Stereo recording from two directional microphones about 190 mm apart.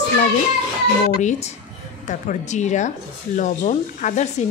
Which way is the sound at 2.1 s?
40° left (ahead or behind).